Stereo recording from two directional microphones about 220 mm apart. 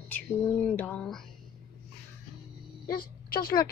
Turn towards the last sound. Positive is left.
turn(degrees=45)  # may be behind; listen again after turning